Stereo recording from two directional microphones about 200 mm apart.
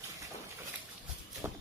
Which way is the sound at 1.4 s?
10° right (ahead or behind).